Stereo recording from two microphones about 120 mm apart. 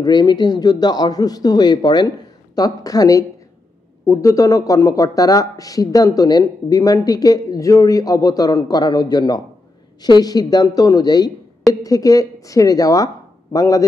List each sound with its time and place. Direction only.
0.0 s a man's voice: 35° left (ahead or behind)